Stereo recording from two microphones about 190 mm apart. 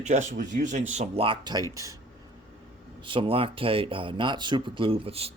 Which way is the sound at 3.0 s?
30° right (ahead or behind).